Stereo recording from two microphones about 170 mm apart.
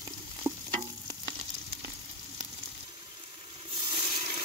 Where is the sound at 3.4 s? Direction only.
35° right (ahead or behind).